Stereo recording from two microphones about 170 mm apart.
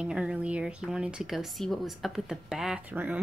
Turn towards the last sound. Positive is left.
turn(degrees=-10)  # may be behind; listen again after turning